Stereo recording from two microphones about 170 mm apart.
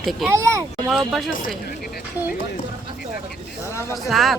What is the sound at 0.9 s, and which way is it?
Speech, centre (ahead or behind).